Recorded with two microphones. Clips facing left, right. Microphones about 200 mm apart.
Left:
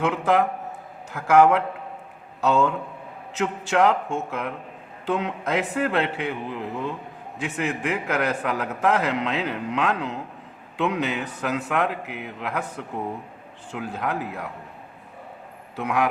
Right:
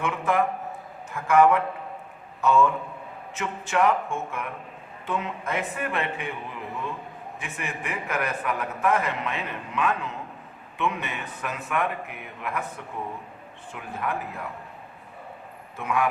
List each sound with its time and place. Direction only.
0.0 s a man's voice: 75° left (ahead or behind)
7.3 s a man's voice: 75° left (ahead or behind)
15.7 s a man's voice: 75° left (ahead or behind)